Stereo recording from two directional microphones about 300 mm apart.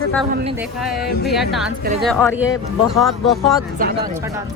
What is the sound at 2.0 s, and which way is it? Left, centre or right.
Speech, centre.